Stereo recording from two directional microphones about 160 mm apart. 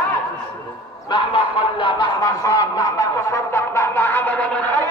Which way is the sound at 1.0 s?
30° left (ahead or behind).